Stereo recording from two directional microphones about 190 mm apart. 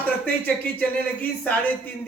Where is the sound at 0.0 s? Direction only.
10° left (ahead or behind).